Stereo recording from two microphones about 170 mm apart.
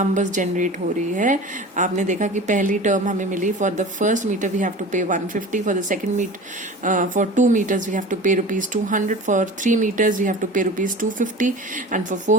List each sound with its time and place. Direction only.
0.0 s speech: 45° right (ahead or behind)